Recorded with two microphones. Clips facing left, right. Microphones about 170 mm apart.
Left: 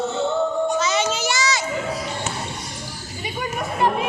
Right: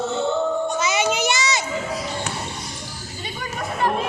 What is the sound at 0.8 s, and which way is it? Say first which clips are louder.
Children playing: right 1 dB; 10° right (ahead or behind).